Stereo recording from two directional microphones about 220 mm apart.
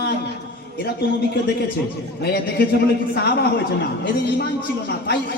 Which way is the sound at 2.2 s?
45° left (ahead or behind).